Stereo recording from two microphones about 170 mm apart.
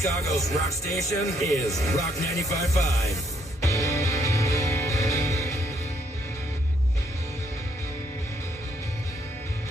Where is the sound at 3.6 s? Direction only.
20° left (ahead or behind).